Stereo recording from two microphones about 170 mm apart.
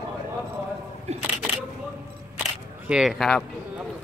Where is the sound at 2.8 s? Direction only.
5° right (ahead or behind).